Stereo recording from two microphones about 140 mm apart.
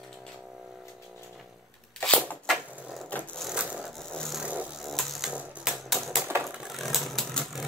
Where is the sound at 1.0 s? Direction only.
Centre (ahead or behind).